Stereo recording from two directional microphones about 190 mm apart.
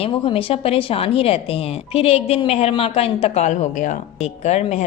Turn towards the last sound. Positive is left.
turn(degrees=35)  # may be behind; listen again after turning